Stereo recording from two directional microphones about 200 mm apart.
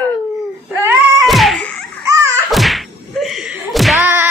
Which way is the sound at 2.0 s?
15° right (ahead or behind).